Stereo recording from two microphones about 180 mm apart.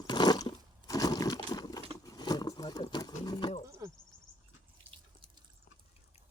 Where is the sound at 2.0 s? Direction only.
20° left (ahead or behind).